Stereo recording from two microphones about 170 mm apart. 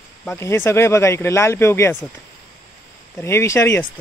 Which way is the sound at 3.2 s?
15° left (ahead or behind).